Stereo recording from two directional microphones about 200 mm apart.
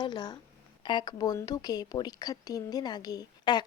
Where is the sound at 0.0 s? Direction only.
20° left (ahead or behind).